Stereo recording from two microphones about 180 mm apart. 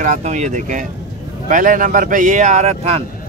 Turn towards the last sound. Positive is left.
turn(degrees=-35)  # may be behind; listen again after turning